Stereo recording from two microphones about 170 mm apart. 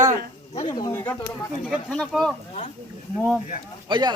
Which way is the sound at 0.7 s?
15° left (ahead or behind).